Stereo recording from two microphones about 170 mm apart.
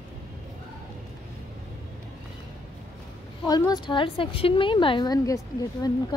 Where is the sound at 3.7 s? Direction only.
30° left (ahead or behind).